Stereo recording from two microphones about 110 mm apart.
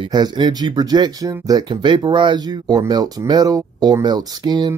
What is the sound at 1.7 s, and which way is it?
Speech, 45° right (ahead or behind).